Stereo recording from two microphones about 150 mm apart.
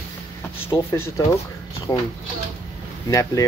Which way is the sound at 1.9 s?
25° left (ahead or behind).